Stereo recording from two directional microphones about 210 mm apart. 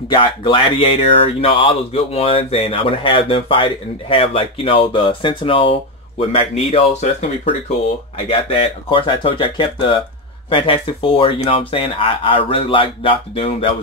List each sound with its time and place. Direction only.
0.1 s speech: 25° left (ahead or behind)